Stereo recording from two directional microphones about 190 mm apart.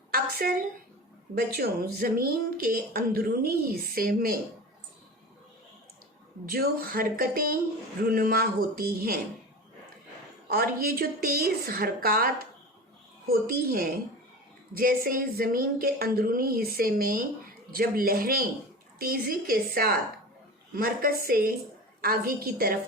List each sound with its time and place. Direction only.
0.1 s a sound: 50° right (ahead or behind)
1.4 s a woman's voice: 55° right (ahead or behind)
6.5 s a woman's voice: 50° right (ahead or behind)
10.5 s a woman's voice: 50° right (ahead or behind)